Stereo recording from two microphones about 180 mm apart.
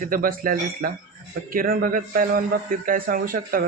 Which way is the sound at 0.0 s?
50° right (ahead or behind).